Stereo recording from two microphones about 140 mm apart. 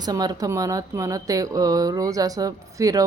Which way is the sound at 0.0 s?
30° right (ahead or behind).